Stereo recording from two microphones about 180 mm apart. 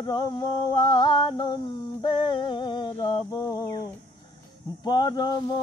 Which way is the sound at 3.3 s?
20° left (ahead or behind).